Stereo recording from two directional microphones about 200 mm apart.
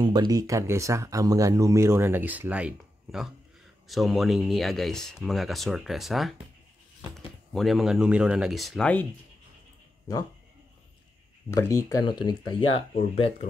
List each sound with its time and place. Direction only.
0.0 s speech: 20° right (ahead or behind); by 9.0 s 5° left (ahead or behind)
11.5 s speech: 15° left (ahead or behind)